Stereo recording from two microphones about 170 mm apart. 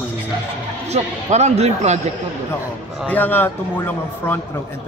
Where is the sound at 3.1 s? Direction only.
10° left (ahead or behind).